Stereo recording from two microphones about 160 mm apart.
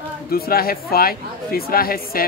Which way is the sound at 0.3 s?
70° left (ahead or behind).